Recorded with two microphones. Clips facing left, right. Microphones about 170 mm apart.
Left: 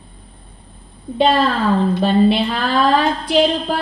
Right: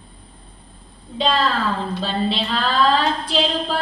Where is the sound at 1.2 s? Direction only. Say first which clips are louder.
Left 5 dB; 60° left (ahead or behind).